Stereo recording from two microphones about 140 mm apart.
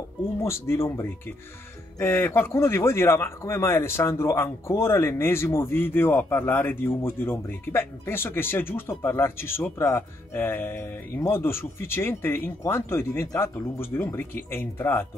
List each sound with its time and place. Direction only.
0.4 s speech: 20° left (ahead or behind)